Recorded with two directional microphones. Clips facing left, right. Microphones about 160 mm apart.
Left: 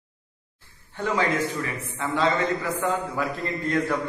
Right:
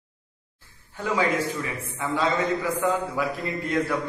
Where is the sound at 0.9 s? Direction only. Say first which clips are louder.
Even; 10° right (ahead or behind).